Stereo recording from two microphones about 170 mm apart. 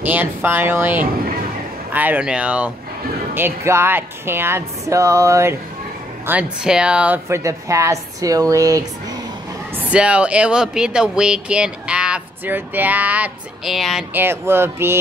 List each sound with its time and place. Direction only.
0.0 s a woman's voice: 10° right (ahead or behind)
6.2 s a woman's voice: 5° right (ahead or behind)
9.8 s speech: 5° right (ahead or behind)
14.1 s a woman's voice: 15° right (ahead or behind)